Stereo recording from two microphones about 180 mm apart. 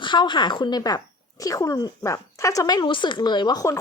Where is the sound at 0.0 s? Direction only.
25° left (ahead or behind).